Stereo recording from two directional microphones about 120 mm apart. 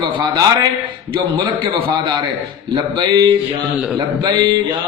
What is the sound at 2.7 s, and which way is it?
A man's voice, 40° right (ahead or behind).